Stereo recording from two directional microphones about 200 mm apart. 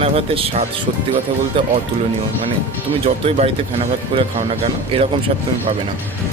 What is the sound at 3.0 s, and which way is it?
Speech, 30° right (ahead or behind).